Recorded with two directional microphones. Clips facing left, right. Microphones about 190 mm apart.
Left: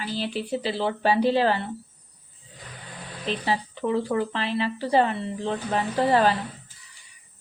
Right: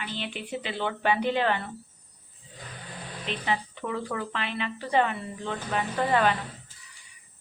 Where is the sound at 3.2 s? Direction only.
35° left (ahead or behind).